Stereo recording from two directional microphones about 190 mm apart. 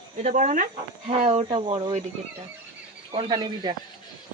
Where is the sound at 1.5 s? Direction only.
25° right (ahead or behind).